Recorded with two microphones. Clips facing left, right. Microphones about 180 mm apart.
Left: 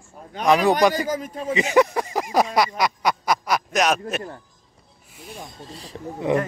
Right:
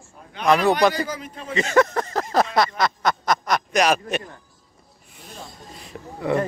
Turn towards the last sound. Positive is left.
turn(degrees=20)  # may be behind; listen again after turning